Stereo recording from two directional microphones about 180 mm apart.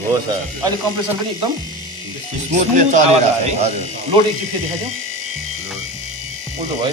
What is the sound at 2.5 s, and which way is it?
A man's voice, 40° right (ahead or behind).